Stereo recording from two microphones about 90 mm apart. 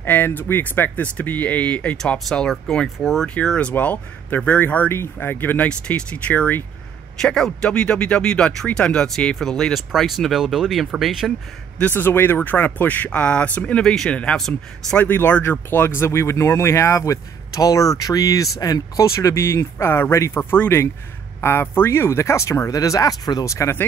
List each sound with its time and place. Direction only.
0.0 s speech: 20° left (ahead or behind); by 3.3 s centre (ahead or behind)
3.3 s speech: 15° left (ahead or behind)
7.2 s speech: 5° left (ahead or behind)
11.8 s speech: 25° left (ahead or behind); by 15.0 s 5° left (ahead or behind)
15.0 s speech: 20° left (ahead or behind)